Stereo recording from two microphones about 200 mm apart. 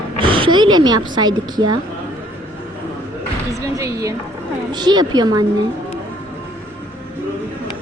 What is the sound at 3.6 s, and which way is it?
A woman's voice, 15° right (ahead or behind).